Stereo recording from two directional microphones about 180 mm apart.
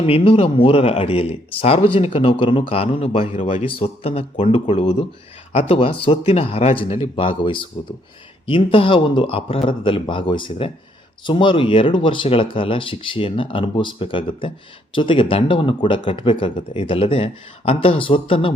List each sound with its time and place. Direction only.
0.0 s speech: 35° left (ahead or behind)